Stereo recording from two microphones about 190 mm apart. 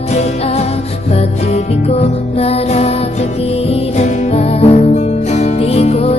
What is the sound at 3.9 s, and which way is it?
Music, 35° left (ahead or behind).